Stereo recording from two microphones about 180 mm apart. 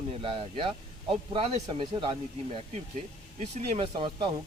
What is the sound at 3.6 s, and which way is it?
Speech, 30° right (ahead or behind).